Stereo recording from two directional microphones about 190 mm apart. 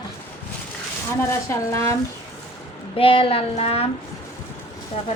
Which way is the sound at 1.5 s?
15° left (ahead or behind).